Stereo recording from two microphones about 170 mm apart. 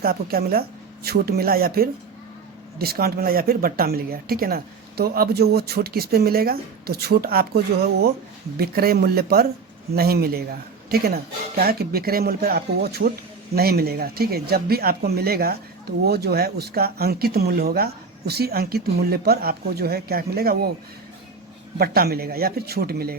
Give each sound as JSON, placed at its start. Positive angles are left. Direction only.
{"t": 0.0, "sound": "speech", "side_deg": -60}
{"t": 21.8, "sound": "speech", "side_deg": -65}